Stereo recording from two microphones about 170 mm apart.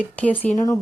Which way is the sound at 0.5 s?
20° left (ahead or behind).